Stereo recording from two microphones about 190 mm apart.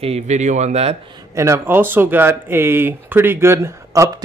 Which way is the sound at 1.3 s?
15° right (ahead or behind).